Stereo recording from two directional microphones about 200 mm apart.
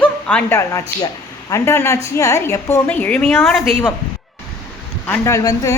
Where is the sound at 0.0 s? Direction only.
5° left (ahead or behind).